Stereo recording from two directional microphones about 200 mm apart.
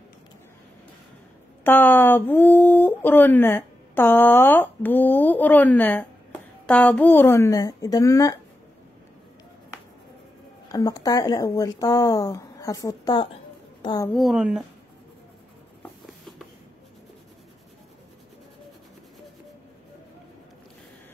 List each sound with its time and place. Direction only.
1.6 s speech: 10° left (ahead or behind)
10.7 s a woman's voice: 20° left (ahead or behind)
14.1 s speech: centre (ahead or behind)
16.1 s a sound: centre (ahead or behind)